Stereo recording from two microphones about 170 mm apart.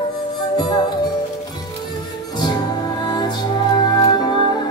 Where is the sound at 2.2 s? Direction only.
25° left (ahead or behind).